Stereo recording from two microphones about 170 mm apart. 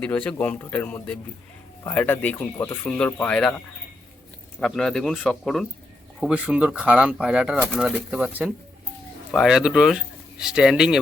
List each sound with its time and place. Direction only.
0.0 s speech: 5° left (ahead or behind)
4.6 s speech: centre (ahead or behind)